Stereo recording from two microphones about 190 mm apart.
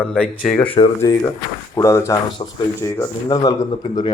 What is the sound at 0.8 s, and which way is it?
Speech, 30° left (ahead or behind).